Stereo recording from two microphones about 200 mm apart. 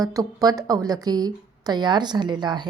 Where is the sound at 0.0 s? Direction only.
15° right (ahead or behind).